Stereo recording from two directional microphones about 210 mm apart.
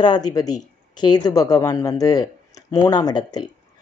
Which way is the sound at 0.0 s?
20° left (ahead or behind).